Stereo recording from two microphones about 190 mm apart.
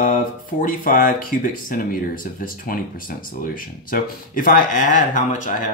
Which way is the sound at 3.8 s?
45° left (ahead or behind).